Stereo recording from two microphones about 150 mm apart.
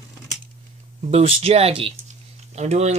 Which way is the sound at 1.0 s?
40° right (ahead or behind).